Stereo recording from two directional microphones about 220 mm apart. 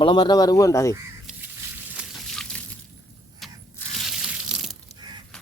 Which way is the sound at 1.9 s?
Centre (ahead or behind).